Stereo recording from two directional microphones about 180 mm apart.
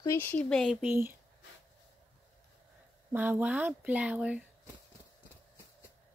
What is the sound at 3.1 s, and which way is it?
Speech, 10° right (ahead or behind).